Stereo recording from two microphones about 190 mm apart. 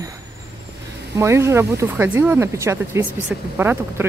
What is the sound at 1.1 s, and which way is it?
Speech, 15° right (ahead or behind).